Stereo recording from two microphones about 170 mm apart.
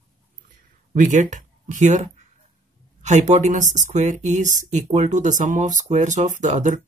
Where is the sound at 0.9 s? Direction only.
45° right (ahead or behind).